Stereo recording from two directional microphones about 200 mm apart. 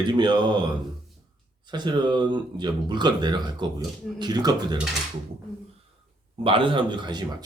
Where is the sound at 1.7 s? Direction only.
20° right (ahead or behind).